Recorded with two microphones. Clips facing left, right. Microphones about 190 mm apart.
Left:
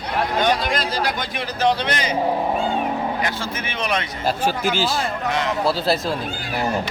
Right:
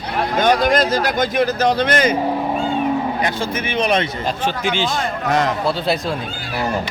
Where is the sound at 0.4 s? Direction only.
45° right (ahead or behind).